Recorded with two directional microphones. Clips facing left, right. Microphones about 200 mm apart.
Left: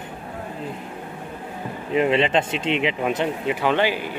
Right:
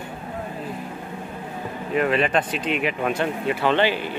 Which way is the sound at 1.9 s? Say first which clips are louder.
Left 2 dB; 25° left (ahead or behind).